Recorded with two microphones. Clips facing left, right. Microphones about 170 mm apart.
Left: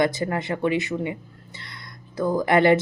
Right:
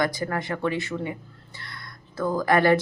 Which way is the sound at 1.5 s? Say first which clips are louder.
Right 1 dB; 20° left (ahead or behind).